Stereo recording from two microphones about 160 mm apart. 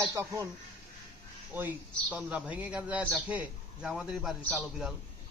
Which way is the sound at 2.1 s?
10° right (ahead or behind).